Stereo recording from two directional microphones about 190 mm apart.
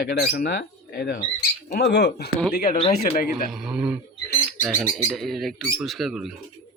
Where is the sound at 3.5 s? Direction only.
5° right (ahead or behind).